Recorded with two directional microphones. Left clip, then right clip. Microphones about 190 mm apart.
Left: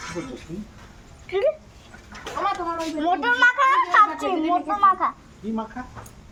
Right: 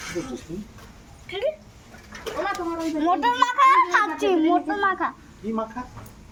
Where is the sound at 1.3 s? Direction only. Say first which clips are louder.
Left 4 dB; 15° left (ahead or behind).